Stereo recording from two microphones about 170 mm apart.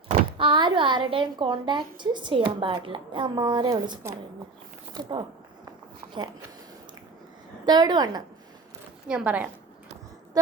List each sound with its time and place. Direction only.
0.1 s speech: 30° right (ahead or behind)
7.6 s speech: 25° right (ahead or behind)
9.0 s a woman's voice: 5° right (ahead or behind)